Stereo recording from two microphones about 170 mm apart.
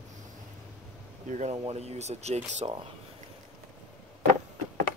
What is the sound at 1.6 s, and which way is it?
Speech, 40° right (ahead or behind).